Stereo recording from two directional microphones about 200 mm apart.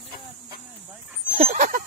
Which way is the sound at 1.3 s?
40° right (ahead or behind).